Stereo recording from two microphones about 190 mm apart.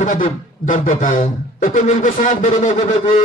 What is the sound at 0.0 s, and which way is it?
Speech, 40° left (ahead or behind).